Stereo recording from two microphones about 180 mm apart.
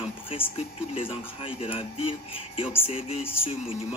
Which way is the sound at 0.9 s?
30° left (ahead or behind).